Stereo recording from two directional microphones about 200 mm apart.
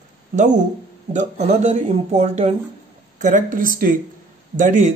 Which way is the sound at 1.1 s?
35° right (ahead or behind).